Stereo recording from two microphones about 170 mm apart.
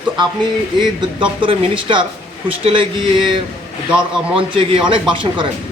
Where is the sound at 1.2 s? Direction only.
30° right (ahead or behind).